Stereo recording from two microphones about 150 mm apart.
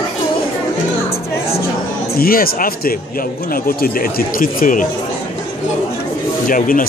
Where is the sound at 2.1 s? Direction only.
80° left.